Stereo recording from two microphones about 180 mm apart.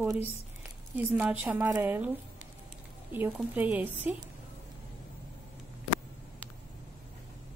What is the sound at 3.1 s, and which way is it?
Speech, 10° right (ahead or behind).